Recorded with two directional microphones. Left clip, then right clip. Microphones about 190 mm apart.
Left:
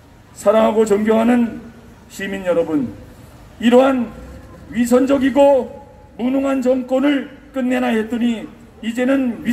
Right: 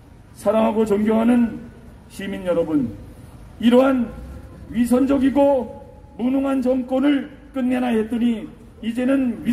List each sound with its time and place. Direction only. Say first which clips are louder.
0.4 s a man's voice: left 5 dB; 20° left (ahead or behind)